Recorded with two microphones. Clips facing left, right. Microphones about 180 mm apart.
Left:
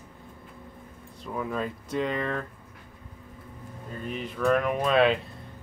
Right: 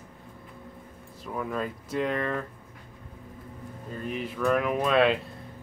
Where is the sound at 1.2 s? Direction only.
Centre (ahead or behind).